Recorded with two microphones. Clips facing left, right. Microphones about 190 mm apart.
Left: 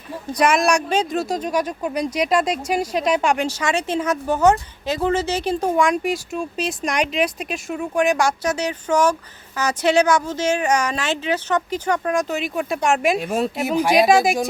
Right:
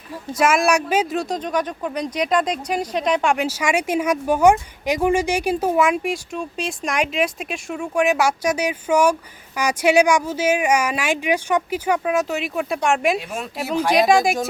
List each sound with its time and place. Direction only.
0.3 s speech: 5° right (ahead or behind)
13.1 s speech: 40° left (ahead or behind)
13.6 s speech: 20° left (ahead or behind)
13.8 s speech: 5° left (ahead or behind)